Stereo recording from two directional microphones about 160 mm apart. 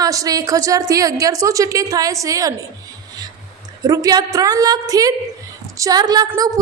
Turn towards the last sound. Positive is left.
turn(degrees=-20)  # may be behind; listen again after turning